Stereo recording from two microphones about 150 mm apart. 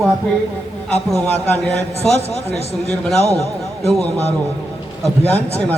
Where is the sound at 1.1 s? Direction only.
15° left (ahead or behind).